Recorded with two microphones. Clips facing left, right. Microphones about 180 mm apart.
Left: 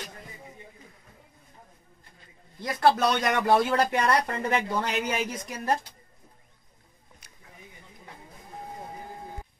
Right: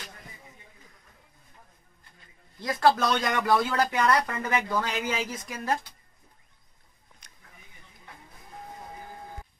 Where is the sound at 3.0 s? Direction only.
25° left (ahead or behind).